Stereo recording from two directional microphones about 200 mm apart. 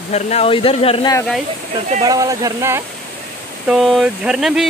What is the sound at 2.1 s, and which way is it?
Speech, 15° right (ahead or behind).